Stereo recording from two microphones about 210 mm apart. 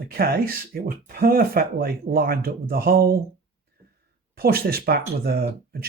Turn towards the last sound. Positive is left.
turn(degrees=-45)  # may be behind; listen again after turning